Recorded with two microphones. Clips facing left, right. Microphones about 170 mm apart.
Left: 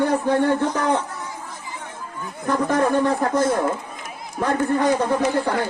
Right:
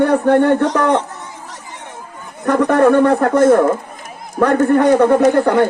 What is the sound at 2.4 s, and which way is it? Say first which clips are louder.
A man's voice: right 8 dB; 65° right (ahead or behind).